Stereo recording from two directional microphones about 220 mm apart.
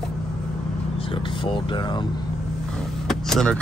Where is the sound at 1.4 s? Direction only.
20° left (ahead or behind).